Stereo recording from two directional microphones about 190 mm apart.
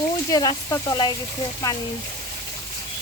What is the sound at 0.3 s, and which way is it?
Speech, 20° left (ahead or behind).